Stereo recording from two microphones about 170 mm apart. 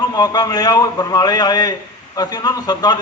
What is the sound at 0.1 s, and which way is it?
A man's voice, 25° left (ahead or behind).